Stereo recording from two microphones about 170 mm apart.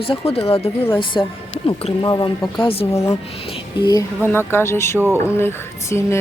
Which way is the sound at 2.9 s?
15° left (ahead or behind).